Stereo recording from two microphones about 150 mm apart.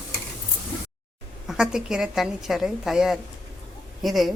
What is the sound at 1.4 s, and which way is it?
A woman's voice, 5° right (ahead or behind).